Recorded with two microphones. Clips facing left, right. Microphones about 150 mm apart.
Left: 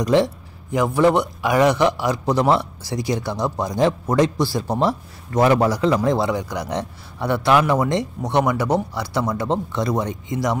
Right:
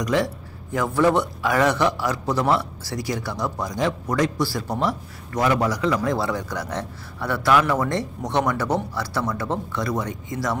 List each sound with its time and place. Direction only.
0.0 s a man's voice: 25° left (ahead or behind)
0.7 s a man's voice: 15° left (ahead or behind)